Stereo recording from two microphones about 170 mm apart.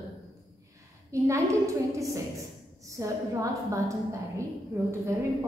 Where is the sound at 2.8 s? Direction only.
20° right (ahead or behind).